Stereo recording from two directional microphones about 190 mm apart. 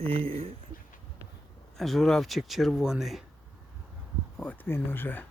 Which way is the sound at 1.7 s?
Centre (ahead or behind).